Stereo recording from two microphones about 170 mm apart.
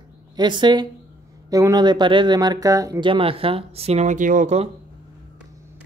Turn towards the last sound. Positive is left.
turn(degrees=-45)  # may be behind; listen again after turning